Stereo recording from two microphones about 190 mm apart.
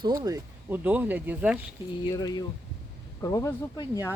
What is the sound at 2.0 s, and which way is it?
Speech, 20° left (ahead or behind).